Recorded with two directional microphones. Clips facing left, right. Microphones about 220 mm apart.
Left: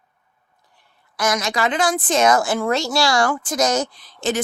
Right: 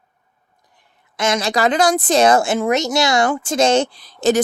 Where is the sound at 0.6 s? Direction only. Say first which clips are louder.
Right 1 dB; 15° right (ahead or behind).